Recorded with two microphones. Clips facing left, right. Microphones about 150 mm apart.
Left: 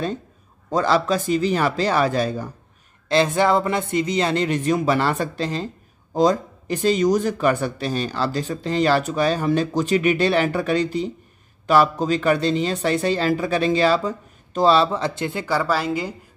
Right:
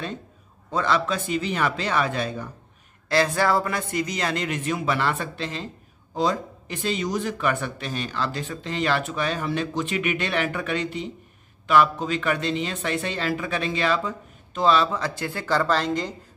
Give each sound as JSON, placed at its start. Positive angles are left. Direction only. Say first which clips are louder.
{"t": 0.7, "sound": "speech", "louder": "left 4 dB", "side_deg": 35}
{"t": 3.1, "sound": "speech", "louder": "left 4 dB", "side_deg": 20}
{"t": 15.4, "sound": "speech", "louder": "even", "side_deg": 10}